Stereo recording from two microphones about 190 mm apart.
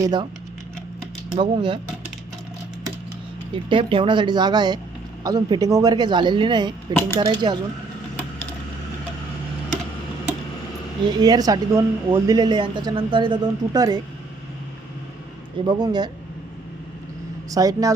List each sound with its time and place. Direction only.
0.0 s speech: 20° right (ahead or behind)
1.4 s speech: 25° right (ahead or behind)
3.5 s speech: 25° right (ahead or behind)
11.0 s speech: 20° right (ahead or behind)
15.6 s speech: 20° right (ahead or behind)
17.5 s speech: 20° right (ahead or behind)